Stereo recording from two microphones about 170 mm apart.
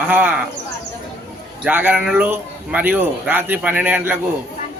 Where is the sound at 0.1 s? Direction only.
10° right (ahead or behind).